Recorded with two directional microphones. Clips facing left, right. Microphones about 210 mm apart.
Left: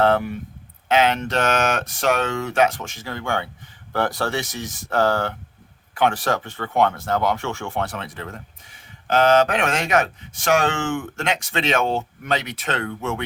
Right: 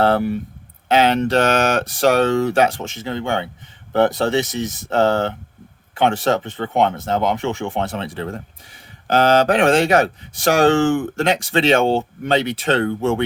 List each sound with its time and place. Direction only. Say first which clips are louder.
0.0 s speech: right 2 dB; 35° right (ahead or behind)